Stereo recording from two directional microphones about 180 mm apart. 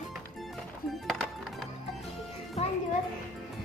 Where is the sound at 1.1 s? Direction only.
Centre (ahead or behind).